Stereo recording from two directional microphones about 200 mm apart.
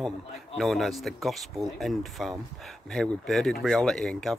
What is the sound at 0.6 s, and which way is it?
Speech, centre (ahead or behind).